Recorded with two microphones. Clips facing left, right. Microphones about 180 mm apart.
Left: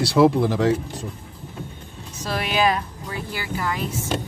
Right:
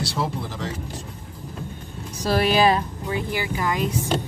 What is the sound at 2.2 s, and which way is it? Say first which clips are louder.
Speech: right 3 dB; 35° right (ahead or behind).